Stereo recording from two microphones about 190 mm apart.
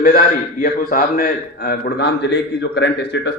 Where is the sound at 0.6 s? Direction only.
50° left (ahead or behind).